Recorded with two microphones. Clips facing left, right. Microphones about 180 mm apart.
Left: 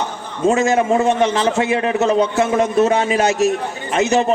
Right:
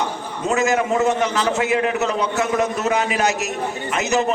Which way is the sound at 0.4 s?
30° left (ahead or behind).